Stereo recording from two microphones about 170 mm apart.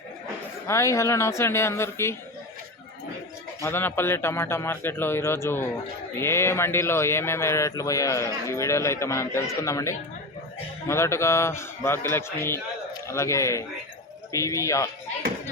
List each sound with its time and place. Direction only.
0.7 s speech: 15° left (ahead or behind)
3.6 s speech: 15° left (ahead or behind)